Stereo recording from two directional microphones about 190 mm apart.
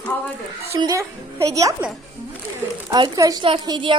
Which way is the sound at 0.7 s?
15° right (ahead or behind).